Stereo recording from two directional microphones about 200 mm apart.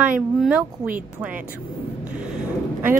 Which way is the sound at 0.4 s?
5° right (ahead or behind).